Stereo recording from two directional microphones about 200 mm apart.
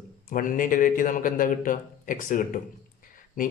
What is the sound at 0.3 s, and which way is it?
A man's voice, 45° left (ahead or behind).